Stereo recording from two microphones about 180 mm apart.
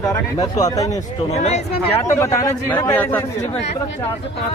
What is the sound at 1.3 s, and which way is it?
Speech, 40° left (ahead or behind).